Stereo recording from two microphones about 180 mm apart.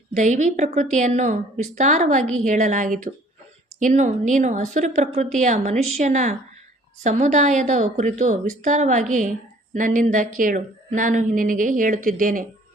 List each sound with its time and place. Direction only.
0.1 s a woman's voice: 45° right (ahead or behind)